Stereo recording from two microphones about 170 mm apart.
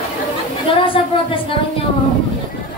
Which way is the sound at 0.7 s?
30° left (ahead or behind).